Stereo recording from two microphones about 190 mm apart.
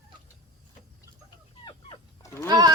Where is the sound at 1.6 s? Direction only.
20° left (ahead or behind).